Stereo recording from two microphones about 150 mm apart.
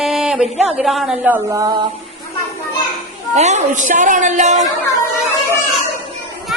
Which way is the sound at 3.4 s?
50° right (ahead or behind).